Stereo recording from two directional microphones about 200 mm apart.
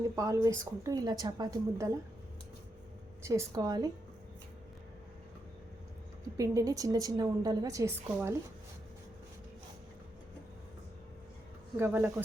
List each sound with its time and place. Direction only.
0.2 s a woman's voice: 15° right (ahead or behind)
3.2 s a woman's voice: 15° right (ahead or behind)
6.3 s a woman's voice: 15° right (ahead or behind)
11.8 s a woman's voice: 5° right (ahead or behind)